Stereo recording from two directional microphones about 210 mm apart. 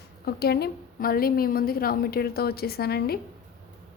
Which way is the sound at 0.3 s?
50° left (ahead or behind).